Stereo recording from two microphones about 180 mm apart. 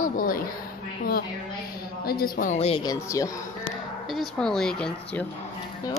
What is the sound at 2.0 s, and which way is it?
Speech, 55° left (ahead or behind).